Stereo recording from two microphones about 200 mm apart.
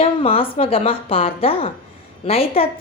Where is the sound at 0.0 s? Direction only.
30° left (ahead or behind).